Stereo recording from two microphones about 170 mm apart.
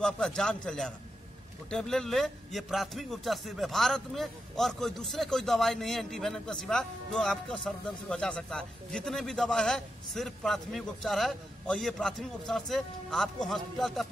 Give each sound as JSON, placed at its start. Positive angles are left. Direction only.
{"t": 0.0, "sound": "a man's voice", "side_deg": 5}